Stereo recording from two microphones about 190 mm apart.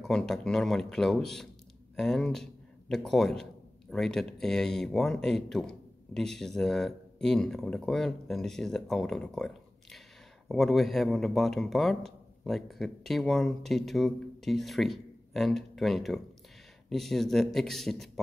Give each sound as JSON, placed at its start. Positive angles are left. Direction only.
{"t": 0.0, "sound": "speech", "side_deg": 0}